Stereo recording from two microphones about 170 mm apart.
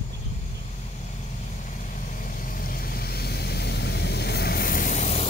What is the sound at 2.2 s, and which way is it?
Vehicle, 55° left (ahead or behind).